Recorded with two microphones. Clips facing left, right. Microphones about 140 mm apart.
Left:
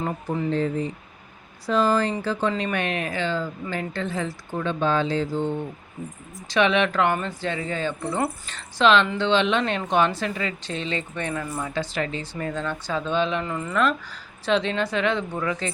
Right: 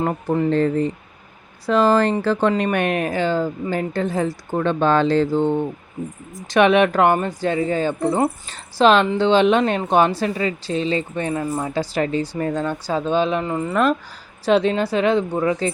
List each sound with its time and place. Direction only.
0.0 s speech: 60° right (ahead or behind)
2.5 s speech: 50° right (ahead or behind)
4.6 s speech: 65° right (ahead or behind)
6.5 s speech: 50° right (ahead or behind); by 15.7 s 35° right (ahead or behind)